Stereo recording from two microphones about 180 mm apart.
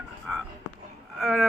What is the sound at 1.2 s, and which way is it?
Speech, centre (ahead or behind).